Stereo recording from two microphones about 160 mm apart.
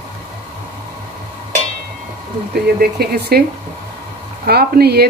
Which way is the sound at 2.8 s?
75° right (ahead or behind).